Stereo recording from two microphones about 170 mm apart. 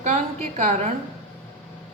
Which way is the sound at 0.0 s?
50° right (ahead or behind).